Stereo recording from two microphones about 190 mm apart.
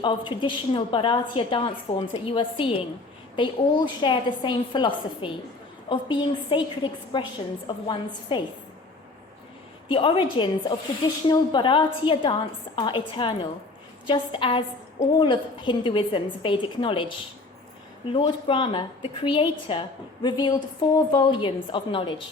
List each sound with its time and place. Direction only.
0.0 s speech: 25° left (ahead or behind)
9.9 s speech: 25° left (ahead or behind)